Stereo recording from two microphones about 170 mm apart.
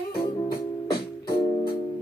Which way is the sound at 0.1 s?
70° left (ahead or behind).